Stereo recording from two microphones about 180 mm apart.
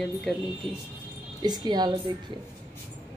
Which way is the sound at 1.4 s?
20° right (ahead or behind).